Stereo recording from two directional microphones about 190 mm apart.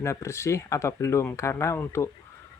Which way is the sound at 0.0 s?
15° left (ahead or behind).